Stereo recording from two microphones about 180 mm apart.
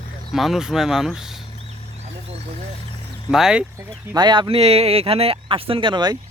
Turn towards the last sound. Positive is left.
turn(degrees=-25)  # may be behind; listen again after turning